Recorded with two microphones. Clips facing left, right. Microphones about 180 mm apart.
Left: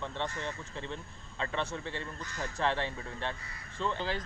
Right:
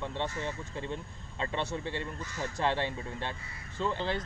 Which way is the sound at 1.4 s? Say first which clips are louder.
Right 1 dB; 30° right (ahead or behind).